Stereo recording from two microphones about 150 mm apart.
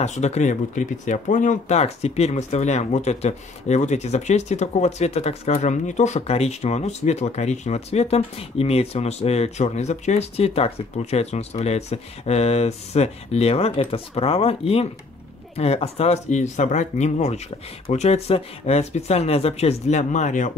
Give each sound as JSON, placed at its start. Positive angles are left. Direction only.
{"t": 0.0, "sound": "speech", "side_deg": 50}